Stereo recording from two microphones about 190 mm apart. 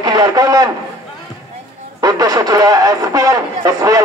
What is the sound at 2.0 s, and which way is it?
Speech, 20° right (ahead or behind).